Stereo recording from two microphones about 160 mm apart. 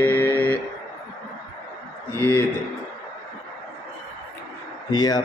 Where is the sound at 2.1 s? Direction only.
15° left (ahead or behind).